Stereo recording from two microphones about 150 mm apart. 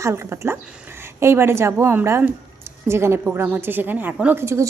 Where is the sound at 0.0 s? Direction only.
20° right (ahead or behind).